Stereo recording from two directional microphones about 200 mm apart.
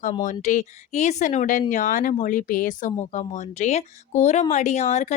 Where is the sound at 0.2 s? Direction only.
40° left (ahead or behind).